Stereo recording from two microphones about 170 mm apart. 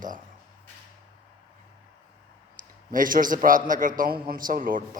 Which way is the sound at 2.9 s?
55° right (ahead or behind).